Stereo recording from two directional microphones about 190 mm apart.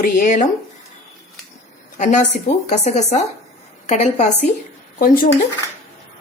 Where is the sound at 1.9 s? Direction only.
40° left (ahead or behind).